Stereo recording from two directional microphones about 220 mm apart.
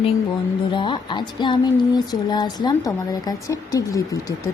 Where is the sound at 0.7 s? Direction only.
20° left (ahead or behind).